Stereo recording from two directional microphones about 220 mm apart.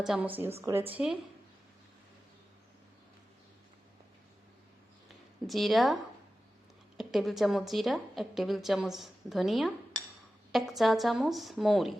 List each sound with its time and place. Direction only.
0.0 s a woman's voice: 5° right (ahead or behind)
5.5 s a woman's voice: centre (ahead or behind)